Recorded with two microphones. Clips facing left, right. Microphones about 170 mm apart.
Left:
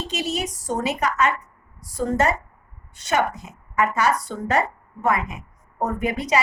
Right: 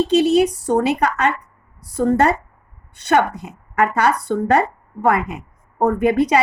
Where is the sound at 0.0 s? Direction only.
60° right (ahead or behind).